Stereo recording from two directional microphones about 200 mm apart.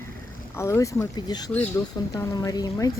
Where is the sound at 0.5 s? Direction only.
15° left (ahead or behind).